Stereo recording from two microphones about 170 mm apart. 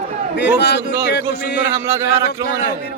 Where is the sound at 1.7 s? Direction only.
15° right (ahead or behind).